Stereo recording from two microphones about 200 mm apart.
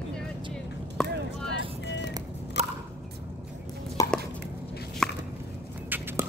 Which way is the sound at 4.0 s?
15° left (ahead or behind).